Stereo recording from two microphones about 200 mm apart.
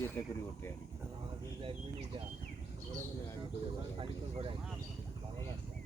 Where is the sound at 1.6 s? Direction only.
30° right (ahead or behind).